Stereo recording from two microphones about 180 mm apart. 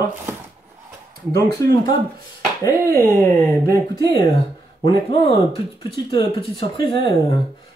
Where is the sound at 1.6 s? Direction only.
15° left (ahead or behind).